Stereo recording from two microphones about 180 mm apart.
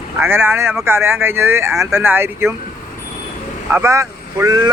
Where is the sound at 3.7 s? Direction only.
15° right (ahead or behind).